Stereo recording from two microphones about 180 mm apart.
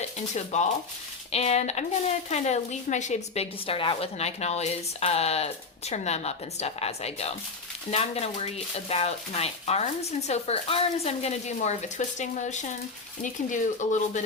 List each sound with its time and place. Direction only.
0.3 s a woman's voice: 40° left (ahead or behind)